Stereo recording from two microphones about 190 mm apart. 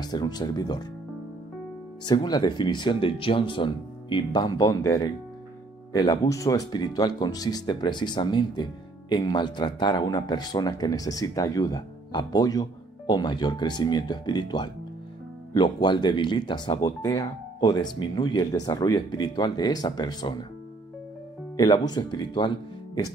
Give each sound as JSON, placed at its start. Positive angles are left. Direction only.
{"t": 0.0, "sound": "speech", "side_deg": 20}
{"t": 2.0, "sound": "speech", "side_deg": 20}
{"t": 21.5, "sound": "speech", "side_deg": 20}